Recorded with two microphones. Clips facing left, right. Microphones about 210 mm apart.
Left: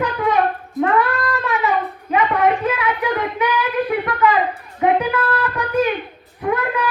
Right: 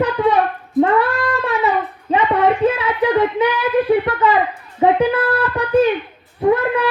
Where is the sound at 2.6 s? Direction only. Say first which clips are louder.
Right 4 dB; 30° right (ahead or behind).